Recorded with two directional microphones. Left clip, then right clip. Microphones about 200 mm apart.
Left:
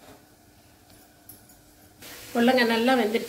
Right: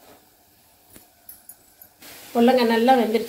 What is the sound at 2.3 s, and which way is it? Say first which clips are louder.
Speech: right 4 dB; 5° right (ahead or behind).